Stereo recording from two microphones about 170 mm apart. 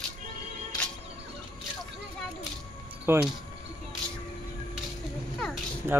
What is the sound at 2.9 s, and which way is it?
Music, 10° right (ahead or behind).